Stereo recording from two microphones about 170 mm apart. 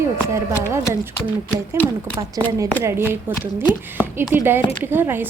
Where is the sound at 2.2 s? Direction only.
20° right (ahead or behind).